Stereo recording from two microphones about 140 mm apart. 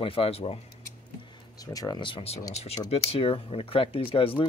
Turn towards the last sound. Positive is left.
turn(degrees=40)  # may be behind; listen again after turning